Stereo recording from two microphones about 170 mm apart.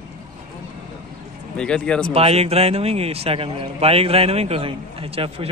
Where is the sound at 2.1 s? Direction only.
35° right (ahead or behind).